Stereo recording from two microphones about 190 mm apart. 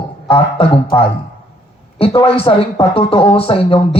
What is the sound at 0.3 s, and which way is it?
Speech, 30° left (ahead or behind).